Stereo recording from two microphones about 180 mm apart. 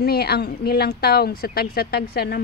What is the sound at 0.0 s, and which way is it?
A woman's voice, 60° left (ahead or behind).